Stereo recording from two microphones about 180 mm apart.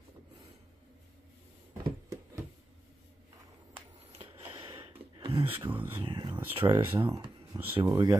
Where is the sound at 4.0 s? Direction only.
35° right (ahead or behind).